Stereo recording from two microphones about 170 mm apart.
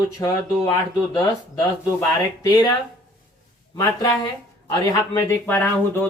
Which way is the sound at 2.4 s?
20° left (ahead or behind).